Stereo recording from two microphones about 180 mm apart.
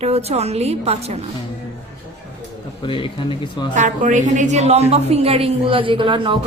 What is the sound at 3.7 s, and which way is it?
A woman's voice, 45° right (ahead or behind).